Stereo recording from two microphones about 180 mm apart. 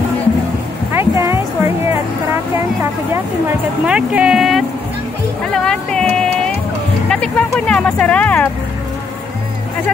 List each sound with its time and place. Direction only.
0.9 s music: 15° right (ahead or behind)
3.8 s speech: 5° right (ahead or behind)